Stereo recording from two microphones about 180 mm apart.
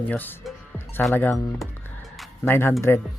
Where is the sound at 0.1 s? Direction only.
5° left (ahead or behind).